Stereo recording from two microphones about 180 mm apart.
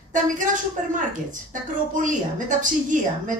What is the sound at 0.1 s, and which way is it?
A woman's voice, 45° right (ahead or behind).